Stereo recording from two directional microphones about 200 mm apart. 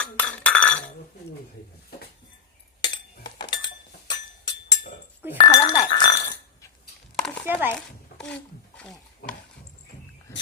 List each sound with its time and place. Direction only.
0.0 s chink: 5° left (ahead or behind)
2.8 s chink: 20° left (ahead or behind)
4.1 s music: 20° left (ahead or behind)
5.4 s chink: 25° left (ahead or behind)
7.4 s a sound: 10° right (ahead or behind)
8.2 s stir: 5° left (ahead or behind)